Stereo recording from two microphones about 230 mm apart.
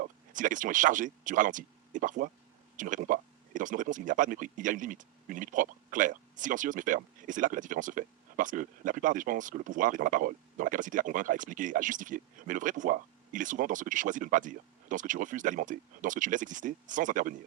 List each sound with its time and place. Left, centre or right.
0.0 s speech: right